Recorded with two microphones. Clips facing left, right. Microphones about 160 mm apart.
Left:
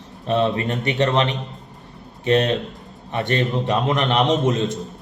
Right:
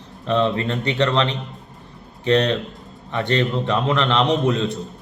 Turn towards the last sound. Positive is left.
turn(degrees=20)  # may be behind; listen again after turning